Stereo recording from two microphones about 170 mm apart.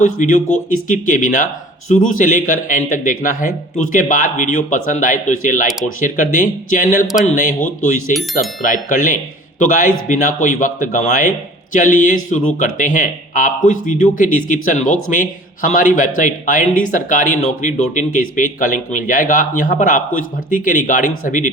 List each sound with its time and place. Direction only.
0.0 s speech: 50° left (ahead or behind)
8.1 s speech: centre (ahead or behind)
8.6 s speech: 50° left (ahead or behind)